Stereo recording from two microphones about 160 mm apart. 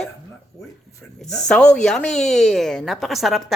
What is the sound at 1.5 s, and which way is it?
A woman's voice, 5° left (ahead or behind).